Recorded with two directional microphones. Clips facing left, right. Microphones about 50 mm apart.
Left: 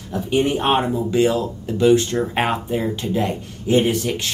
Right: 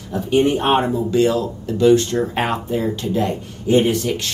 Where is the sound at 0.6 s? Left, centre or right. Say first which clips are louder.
Right 2 dB; centre.